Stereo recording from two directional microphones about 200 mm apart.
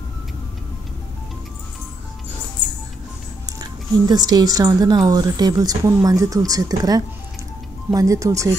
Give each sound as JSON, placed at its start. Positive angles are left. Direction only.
{"t": 3.5, "sound": "speech", "side_deg": -20}